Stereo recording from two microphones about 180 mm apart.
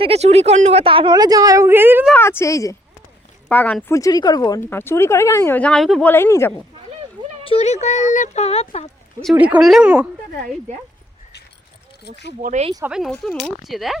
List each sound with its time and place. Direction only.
0.0 s a woman's voice: 35° right (ahead or behind); by 2.0 s 10° right (ahead or behind)
2.1 s speech: 15° left (ahead or behind)
6.1 s speech: 15° left (ahead or behind)
7.4 s speech: 35° left (ahead or behind)
9.3 s speech: 10° right (ahead or behind)
12.4 s speech: 40° right (ahead or behind)
12.8 s speech: centre (ahead or behind)